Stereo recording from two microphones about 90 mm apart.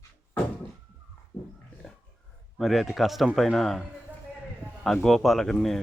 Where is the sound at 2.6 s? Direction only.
Centre (ahead or behind).